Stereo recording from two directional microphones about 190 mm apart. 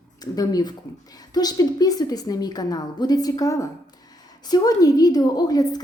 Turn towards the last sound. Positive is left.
turn(degrees=20)  # may be behind; listen again after turning